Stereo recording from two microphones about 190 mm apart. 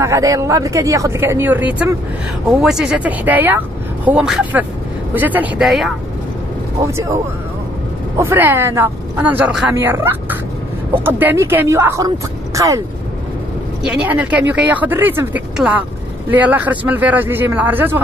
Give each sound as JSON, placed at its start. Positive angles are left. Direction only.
{"t": 0.0, "sound": "speech", "side_deg": -15}
{"t": 6.8, "sound": "speech", "side_deg": -15}
{"t": 8.2, "sound": "speech", "side_deg": -10}
{"t": 13.8, "sound": "speech", "side_deg": -5}